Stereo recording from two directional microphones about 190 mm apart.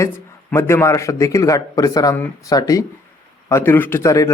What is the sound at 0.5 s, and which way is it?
A man's voice, 15° left (ahead or behind).